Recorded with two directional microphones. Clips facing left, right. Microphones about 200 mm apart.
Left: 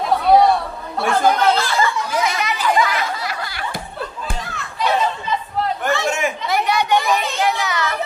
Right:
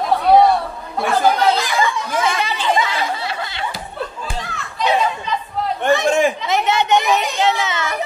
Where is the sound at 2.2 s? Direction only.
30° right (ahead or behind).